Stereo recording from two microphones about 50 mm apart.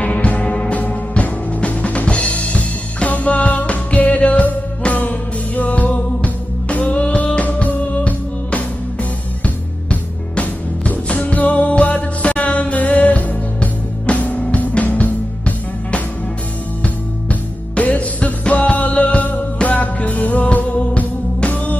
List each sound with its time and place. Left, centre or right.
0.0 s music: left
10.9 s music: left